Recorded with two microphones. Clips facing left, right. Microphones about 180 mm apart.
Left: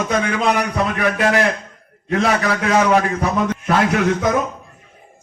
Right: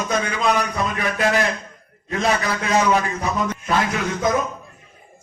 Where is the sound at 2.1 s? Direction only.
65° left (ahead or behind).